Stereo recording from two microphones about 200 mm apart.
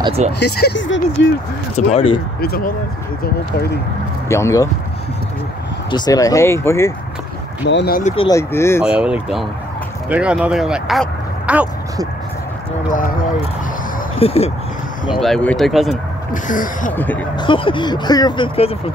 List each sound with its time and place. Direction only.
0.0 s speech: 30° right (ahead or behind)
0.4 s speech: 55° left (ahead or behind)
1.8 s speech: 35° left (ahead or behind)
2.4 s speech: 45° left (ahead or behind)
4.3 s speech: 15° left (ahead or behind)
5.9 s speech: 20° left (ahead or behind)
7.6 s speech: 55° left (ahead or behind)
8.3 s speech: 15° left (ahead or behind)
8.8 s speech: 5° right (ahead or behind)
14.2 s speech: 30° left (ahead or behind)
15.1 s speech: centre (ahead or behind)
16.4 s speech: 40° left (ahead or behind)
16.9 s speech: 10° left (ahead or behind)
17.4 s speech: 25° left (ahead or behind)